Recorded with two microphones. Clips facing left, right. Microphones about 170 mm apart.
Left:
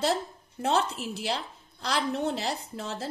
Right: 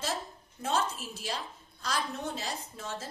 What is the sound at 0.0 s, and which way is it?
Speech, 65° left (ahead or behind).